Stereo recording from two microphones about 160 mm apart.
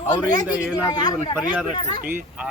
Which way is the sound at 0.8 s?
25° left (ahead or behind).